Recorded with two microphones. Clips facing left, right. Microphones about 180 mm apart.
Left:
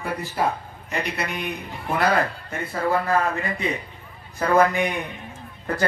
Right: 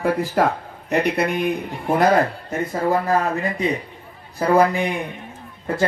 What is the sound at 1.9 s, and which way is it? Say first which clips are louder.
Speech: right 5 dB; 45° right (ahead or behind).